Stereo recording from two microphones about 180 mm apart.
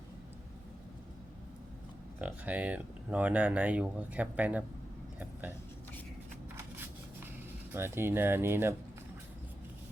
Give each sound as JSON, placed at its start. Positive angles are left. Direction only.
{"t": 2.1, "sound": "speech", "side_deg": -10}
{"t": 7.7, "sound": "speech", "side_deg": -15}